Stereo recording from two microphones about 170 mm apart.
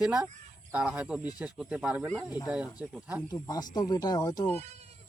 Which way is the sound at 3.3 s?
20° left (ahead or behind).